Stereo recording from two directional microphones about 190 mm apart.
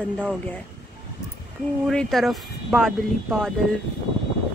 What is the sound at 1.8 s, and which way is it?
Speech, centre (ahead or behind).